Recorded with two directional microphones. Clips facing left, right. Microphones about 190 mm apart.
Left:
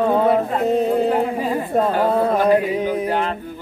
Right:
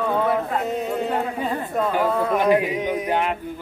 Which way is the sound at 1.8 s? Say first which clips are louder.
Left 4 dB; 40° left (ahead or behind).